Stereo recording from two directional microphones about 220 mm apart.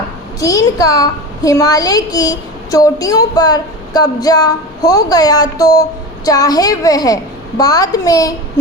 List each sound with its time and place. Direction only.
0.3 s a child's voice: 15° left (ahead or behind)